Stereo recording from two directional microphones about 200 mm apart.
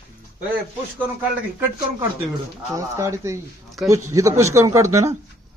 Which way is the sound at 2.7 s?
15° right (ahead or behind).